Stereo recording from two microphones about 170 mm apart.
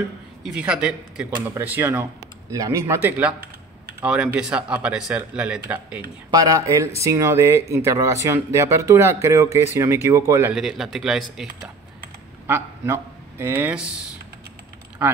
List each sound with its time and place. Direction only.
0.4 s speech: 5° right (ahead or behind)
6.3 s speech: 20° right (ahead or behind)
10.5 s speech: centre (ahead or behind)
12.4 s speech: 15° right (ahead or behind)